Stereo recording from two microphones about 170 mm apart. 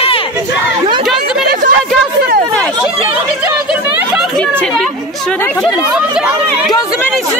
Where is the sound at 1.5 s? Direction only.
55° right (ahead or behind).